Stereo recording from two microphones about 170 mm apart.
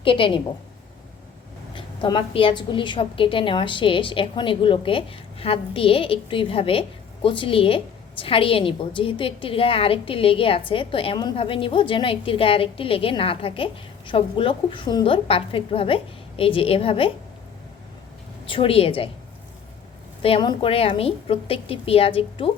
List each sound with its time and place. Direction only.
0.0 s a woman's voice: 30° left (ahead or behind)
1.7 s a woman's voice: 30° left (ahead or behind)
18.4 s a woman's voice: 30° left (ahead or behind)
20.2 s a woman's voice: 30° left (ahead or behind)